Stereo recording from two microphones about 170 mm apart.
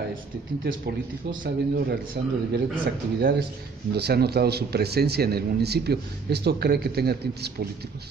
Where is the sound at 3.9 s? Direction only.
70° right (ahead or behind).